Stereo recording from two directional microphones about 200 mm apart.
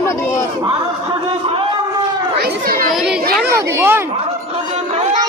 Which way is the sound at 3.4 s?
10° right (ahead or behind).